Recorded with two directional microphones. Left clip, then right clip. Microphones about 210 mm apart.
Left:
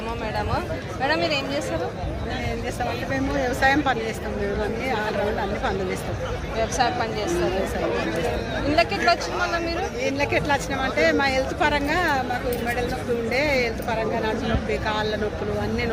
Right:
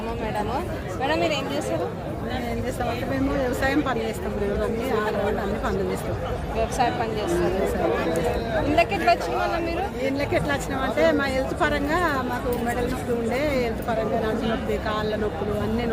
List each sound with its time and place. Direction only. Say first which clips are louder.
3.6 s speech: left 7 dB; 5° right (ahead or behind)
6.7 s speech: left 1 dB; 15° left (ahead or behind)
8.7 s speech: left 1 dB; 15° left (ahead or behind)
10.2 s speech: left 4 dB; 5° right (ahead or behind)
13.3 s speech: left 4 dB; 10° right (ahead or behind)
14.8 s speech: left 3 dB; 10° right (ahead or behind)